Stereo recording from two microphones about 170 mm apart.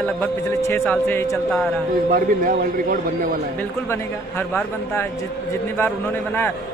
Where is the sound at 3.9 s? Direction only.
15° left (ahead or behind).